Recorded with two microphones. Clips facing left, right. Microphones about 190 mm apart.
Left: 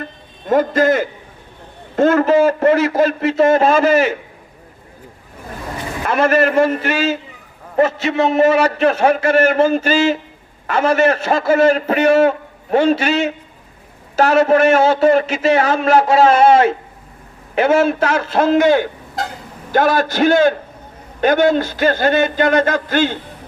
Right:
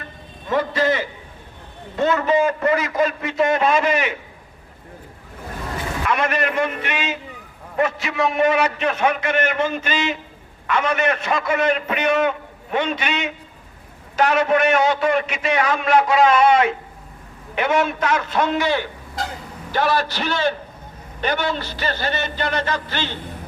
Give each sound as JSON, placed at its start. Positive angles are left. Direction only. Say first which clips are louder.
{"t": 0.4, "sound": "a man's voice", "louder": "left 6 dB", "side_deg": 45}
{"t": 2.9, "sound": "a man's voice", "louder": "left 6 dB", "side_deg": 30}
{"t": 6.1, "sound": "a man's voice", "louder": "left 8 dB", "side_deg": 35}
{"t": 14.3, "sound": "a man's voice", "louder": "left 6 dB", "side_deg": 35}
{"t": 18.5, "sound": "a man's voice", "louder": "left 9 dB", "side_deg": 45}